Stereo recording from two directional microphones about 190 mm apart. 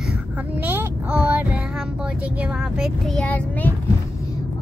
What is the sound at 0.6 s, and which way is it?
Child singing, 10° right (ahead or behind).